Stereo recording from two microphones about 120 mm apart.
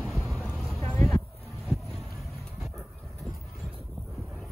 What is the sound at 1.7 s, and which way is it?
Music, centre (ahead or behind).